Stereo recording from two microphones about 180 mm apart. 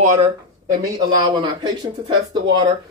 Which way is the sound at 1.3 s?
25° right (ahead or behind).